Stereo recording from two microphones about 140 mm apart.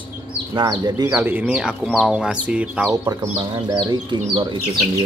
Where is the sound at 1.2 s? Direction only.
15° right (ahead or behind).